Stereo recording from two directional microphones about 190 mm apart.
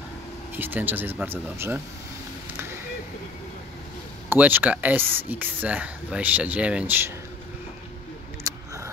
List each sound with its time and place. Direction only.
0.6 s speech: 10° right (ahead or behind)
4.3 s speech: 10° right (ahead or behind)
8.5 s single-lens reflex camera: 15° right (ahead or behind)